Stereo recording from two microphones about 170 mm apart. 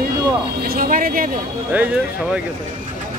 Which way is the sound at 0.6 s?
60° right (ahead or behind).